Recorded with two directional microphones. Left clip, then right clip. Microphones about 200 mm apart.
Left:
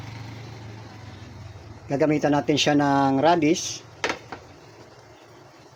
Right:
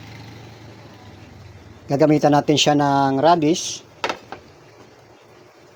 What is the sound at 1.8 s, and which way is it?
Speech, 30° right (ahead or behind).